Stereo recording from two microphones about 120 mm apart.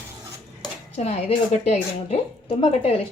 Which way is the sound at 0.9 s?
65° left (ahead or behind).